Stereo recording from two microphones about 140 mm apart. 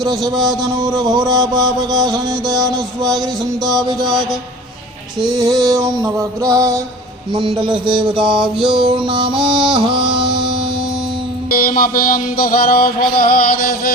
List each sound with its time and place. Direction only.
0.6 s music: 25° right (ahead or behind)
5.3 s music: 30° right (ahead or behind)
7.3 s music: 35° right (ahead or behind)
8.4 s mantra: 5° right (ahead or behind)
8.9 s music: 35° right (ahead or behind)
11.5 s music: 85° left